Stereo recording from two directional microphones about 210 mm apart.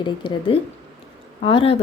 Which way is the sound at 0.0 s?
25° left (ahead or behind).